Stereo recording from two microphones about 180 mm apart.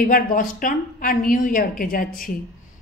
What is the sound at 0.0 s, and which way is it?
A woman's voice, 50° left (ahead or behind).